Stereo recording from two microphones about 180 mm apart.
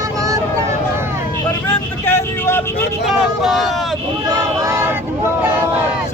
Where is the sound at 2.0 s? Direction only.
10° left (ahead or behind).